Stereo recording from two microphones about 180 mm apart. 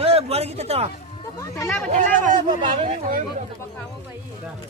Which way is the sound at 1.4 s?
15° left (ahead or behind).